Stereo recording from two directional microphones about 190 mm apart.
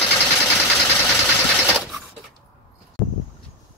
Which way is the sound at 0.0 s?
10° left (ahead or behind).